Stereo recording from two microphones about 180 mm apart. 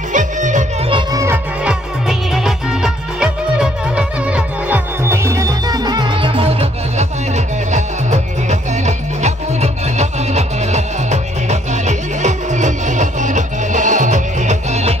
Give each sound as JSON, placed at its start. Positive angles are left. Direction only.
{"t": 0.1, "sound": "music", "side_deg": -45}
{"t": 0.8, "sound": "music", "side_deg": -25}
{"t": 1.2, "sound": "music", "side_deg": -10}